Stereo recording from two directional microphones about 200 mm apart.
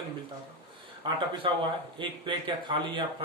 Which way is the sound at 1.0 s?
25° right (ahead or behind).